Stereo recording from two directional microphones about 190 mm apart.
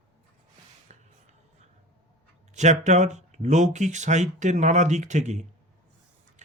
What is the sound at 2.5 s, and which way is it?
Speech, 40° right (ahead or behind).